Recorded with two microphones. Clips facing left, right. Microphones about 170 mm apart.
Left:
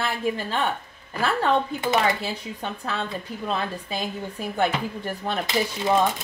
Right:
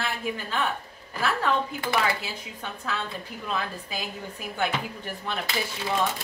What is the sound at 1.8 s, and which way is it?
Speech, 20° left (ahead or behind).